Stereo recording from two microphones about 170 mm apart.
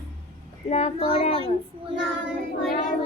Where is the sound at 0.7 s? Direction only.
40° left (ahead or behind).